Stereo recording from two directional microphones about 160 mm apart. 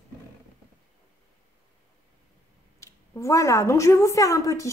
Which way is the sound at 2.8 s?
20° left (ahead or behind).